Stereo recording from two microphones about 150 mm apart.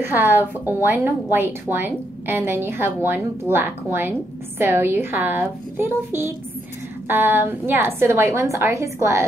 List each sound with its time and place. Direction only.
0.0 s a woman's voice: 15° right (ahead or behind)